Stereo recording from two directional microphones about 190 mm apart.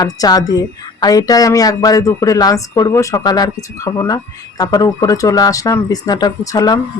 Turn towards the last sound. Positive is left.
turn(degrees=20)  # may be behind; listen again after turning